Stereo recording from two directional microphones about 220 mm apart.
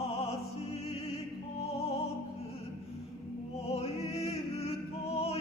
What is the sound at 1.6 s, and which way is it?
Music, 25° left (ahead or behind).